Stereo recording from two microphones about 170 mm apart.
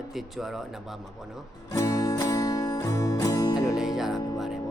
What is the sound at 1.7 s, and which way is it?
Music, 20° left (ahead or behind).